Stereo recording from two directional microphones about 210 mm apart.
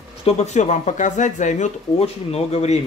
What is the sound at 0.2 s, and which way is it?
Speech, 30° left (ahead or behind).